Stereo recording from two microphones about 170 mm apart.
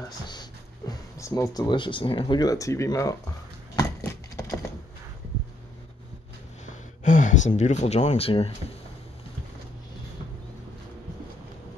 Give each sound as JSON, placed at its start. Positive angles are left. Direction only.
{"t": 0.3, "sound": "speech", "side_deg": 25}
{"t": 3.7, "sound": "horse", "side_deg": 15}
{"t": 6.6, "sound": "a sound", "side_deg": 50}